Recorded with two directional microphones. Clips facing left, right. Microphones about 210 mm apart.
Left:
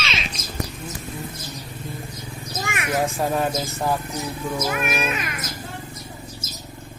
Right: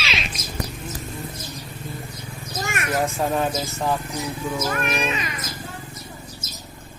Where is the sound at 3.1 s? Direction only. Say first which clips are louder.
Even; 5° left (ahead or behind).